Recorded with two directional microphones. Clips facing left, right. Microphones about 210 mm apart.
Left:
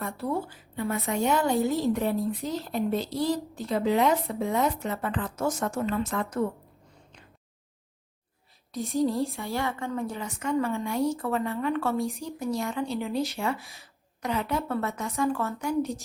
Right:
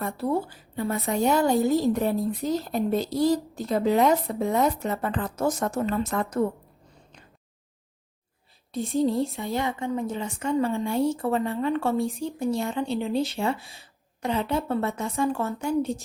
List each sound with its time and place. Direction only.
0.0 s a woman's voice: 35° right (ahead or behind)
8.7 s a woman's voice: 30° right (ahead or behind)
9.3 s a woman's voice: 15° right (ahead or behind)